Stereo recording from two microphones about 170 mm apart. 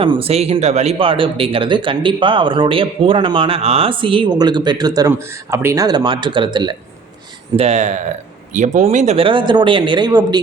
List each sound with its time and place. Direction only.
0.0 s speech: 30° right (ahead or behind)
7.5 s speech: 40° right (ahead or behind); by 10.4 s 25° right (ahead or behind)